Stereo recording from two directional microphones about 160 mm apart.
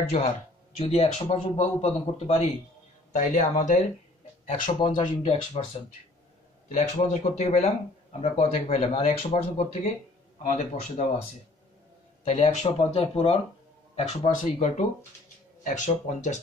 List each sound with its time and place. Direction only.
0.7 s speech: 40° left (ahead or behind)
3.1 s speech: 50° left (ahead or behind)
4.7 s speech: 30° left (ahead or behind)
6.7 s speech: 50° left (ahead or behind)
12.3 s speech: 40° left (ahead or behind)